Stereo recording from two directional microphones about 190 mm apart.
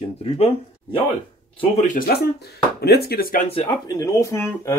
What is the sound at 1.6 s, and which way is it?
Speech, 40° left (ahead or behind).